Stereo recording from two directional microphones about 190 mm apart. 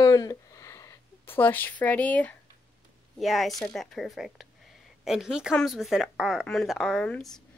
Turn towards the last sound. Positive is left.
turn(degrees=5)  # may be behind; listen again after turning